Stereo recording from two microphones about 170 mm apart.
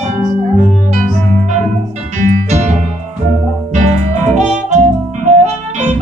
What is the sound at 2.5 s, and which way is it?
Music, 45° right (ahead or behind).